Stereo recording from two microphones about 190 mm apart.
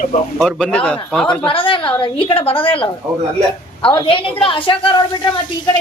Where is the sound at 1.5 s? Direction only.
25° left (ahead or behind).